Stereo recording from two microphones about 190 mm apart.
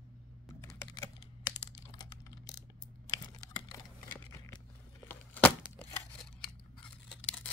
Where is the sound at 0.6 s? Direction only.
15° left (ahead or behind).